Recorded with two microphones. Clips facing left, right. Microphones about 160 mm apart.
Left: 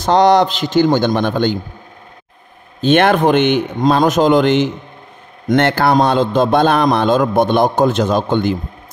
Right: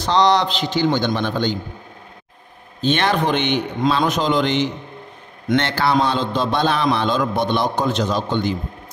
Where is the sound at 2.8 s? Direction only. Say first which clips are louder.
Left 7 dB; 55° left (ahead or behind).